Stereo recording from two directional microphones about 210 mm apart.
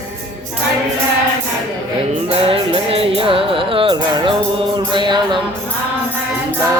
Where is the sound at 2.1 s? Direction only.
25° right (ahead or behind).